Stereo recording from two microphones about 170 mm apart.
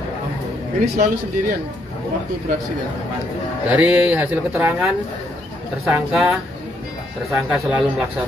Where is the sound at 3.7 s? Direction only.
10° right (ahead or behind).